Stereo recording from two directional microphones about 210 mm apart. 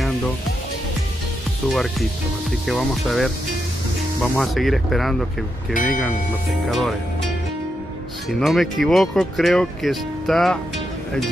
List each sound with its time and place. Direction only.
1.7 s speech: centre (ahead or behind)
5.7 s speech: 40° left (ahead or behind)
6.7 s speech: centre (ahead or behind)
8.4 s speech: centre (ahead or behind)